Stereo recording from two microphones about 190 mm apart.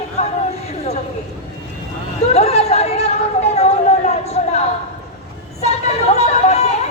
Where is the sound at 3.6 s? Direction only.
35° left (ahead or behind).